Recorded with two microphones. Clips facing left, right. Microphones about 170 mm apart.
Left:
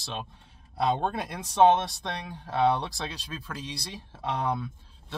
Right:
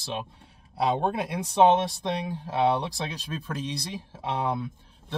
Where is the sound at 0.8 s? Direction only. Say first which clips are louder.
Right 2 dB; 10° right (ahead or behind).